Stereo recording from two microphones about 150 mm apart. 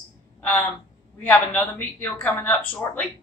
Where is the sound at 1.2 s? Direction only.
10° left (ahead or behind).